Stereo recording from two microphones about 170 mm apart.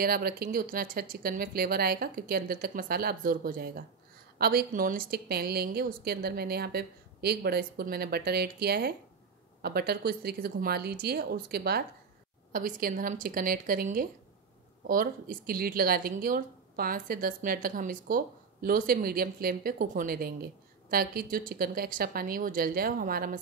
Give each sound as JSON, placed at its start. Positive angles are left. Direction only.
{"t": 0.0, "sound": "a woman's voice", "side_deg": -60}
{"t": 12.5, "sound": "a woman's voice", "side_deg": -55}